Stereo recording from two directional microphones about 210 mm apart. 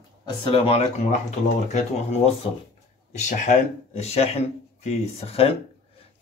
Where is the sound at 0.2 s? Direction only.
25° left (ahead or behind).